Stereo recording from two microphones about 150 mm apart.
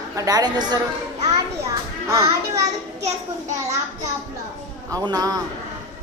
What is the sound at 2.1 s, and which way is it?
Children playing, 20° right (ahead or behind).